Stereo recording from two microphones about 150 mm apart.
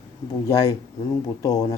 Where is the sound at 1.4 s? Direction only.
25° left (ahead or behind).